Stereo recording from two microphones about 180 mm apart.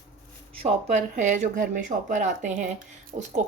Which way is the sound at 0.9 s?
45° right (ahead or behind).